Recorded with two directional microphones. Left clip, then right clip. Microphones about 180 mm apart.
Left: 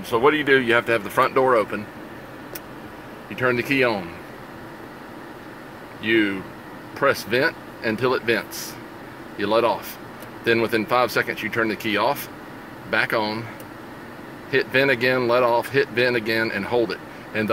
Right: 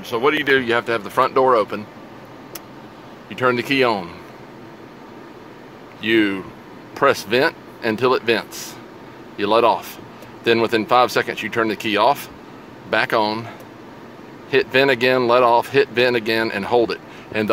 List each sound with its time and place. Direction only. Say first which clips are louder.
0.1 s speech: even; 10° left (ahead or behind); by 1.7 s 10° right (ahead or behind)
3.3 s speech: right 3 dB; 25° right (ahead or behind)
6.0 s speech: right 3 dB; 35° right (ahead or behind)
14.5 s speech: right 3 dB; 25° right (ahead or behind)